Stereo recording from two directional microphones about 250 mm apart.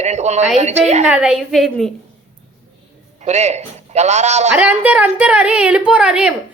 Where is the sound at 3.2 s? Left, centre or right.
Right.